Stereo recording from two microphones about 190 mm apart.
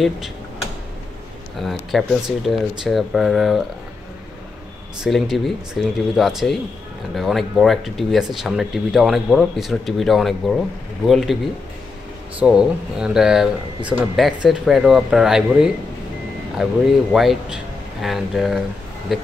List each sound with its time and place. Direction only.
1.6 s speech: centre (ahead or behind)
5.0 s speech: centre (ahead or behind)
12.4 s speech: 5° right (ahead or behind)